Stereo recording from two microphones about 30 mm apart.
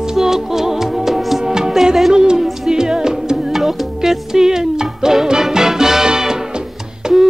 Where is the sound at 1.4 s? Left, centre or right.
Centre.